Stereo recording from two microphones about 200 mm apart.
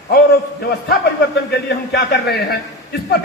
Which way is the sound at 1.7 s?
55° left (ahead or behind).